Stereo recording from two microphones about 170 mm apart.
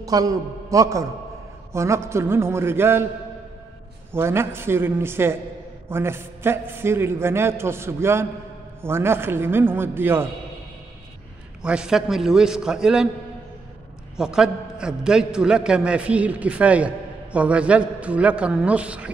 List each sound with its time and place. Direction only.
0.0 s a man's voice: 20° right (ahead or behind)
4.1 s a man's voice: 15° right (ahead or behind)
11.6 s a man's voice: 5° right (ahead or behind)
14.1 s a man's voice: 5° right (ahead or behind)